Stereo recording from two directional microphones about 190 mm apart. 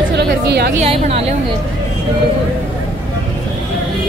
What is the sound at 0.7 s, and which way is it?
Speech, 35° right (ahead or behind).